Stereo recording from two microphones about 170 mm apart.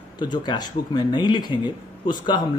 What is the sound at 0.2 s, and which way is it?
Speech, 25° left (ahead or behind).